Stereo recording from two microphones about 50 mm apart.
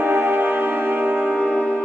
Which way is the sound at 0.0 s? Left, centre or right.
Right.